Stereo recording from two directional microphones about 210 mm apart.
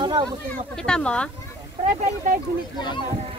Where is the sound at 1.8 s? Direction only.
40° right (ahead or behind).